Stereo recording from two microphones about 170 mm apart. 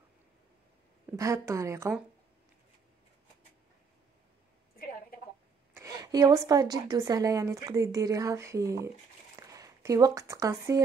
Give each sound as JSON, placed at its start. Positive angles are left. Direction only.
{"t": 1.1, "sound": "speech", "side_deg": -20}
{"t": 5.8, "sound": "a woman's voice", "side_deg": -20}